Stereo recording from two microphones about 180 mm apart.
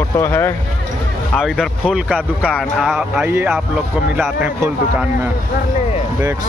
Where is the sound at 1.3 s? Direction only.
Centre (ahead or behind).